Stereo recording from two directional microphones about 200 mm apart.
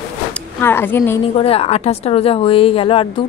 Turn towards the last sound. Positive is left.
turn(degrees=25)  # may be behind; listen again after turning